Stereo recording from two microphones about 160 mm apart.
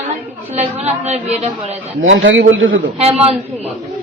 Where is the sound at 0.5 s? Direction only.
45° right (ahead or behind).